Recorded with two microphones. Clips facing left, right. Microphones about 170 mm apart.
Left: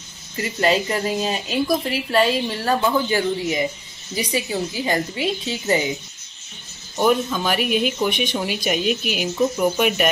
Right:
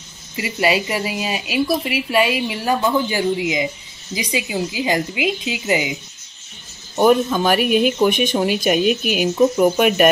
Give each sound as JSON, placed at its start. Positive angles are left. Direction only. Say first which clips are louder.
{"t": 0.4, "sound": "a woman's voice", "louder": "right 1 dB", "side_deg": -10}
{"t": 7.0, "sound": "speech", "louder": "right 5 dB", "side_deg": -45}